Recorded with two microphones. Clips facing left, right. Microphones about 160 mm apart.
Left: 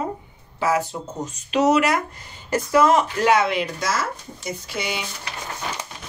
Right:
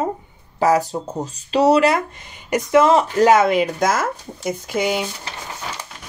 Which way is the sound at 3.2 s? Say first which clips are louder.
Right 5 dB; 45° right (ahead or behind).